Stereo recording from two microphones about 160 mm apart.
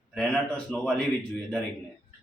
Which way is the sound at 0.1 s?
Centre (ahead or behind).